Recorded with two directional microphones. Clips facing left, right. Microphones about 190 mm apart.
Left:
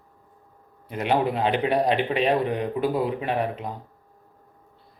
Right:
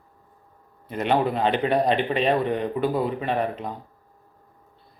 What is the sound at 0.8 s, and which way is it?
A man's voice, 10° left (ahead or behind).